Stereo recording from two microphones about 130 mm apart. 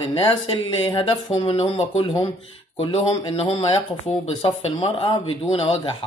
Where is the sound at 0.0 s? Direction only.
45° left (ahead or behind).